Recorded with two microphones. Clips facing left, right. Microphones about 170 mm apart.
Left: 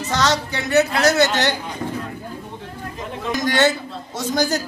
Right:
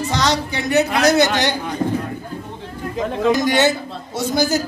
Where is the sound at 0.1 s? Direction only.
15° right (ahead or behind).